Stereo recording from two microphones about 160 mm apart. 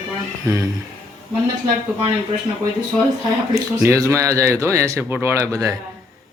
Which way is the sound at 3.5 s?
20° right (ahead or behind).